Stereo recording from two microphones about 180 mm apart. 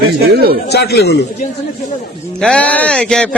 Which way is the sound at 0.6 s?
65° left (ahead or behind).